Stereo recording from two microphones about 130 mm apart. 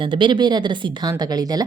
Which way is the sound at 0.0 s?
40° right (ahead or behind).